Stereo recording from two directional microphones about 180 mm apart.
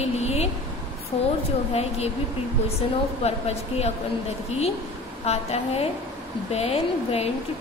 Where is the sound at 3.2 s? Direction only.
35° left (ahead or behind).